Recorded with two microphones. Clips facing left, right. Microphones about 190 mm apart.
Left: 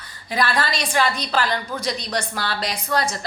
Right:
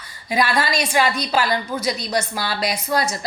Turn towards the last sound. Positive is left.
turn(degrees=-10)  # may be behind; listen again after turning